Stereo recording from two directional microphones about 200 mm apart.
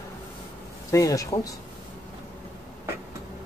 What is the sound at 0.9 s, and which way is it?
Speech, 15° left (ahead or behind).